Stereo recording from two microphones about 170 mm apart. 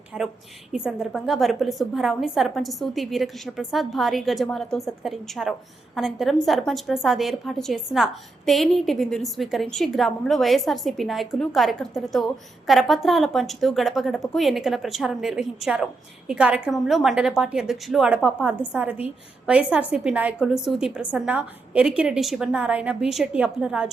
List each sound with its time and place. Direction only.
0.1 s a woman's voice: 5° right (ahead or behind)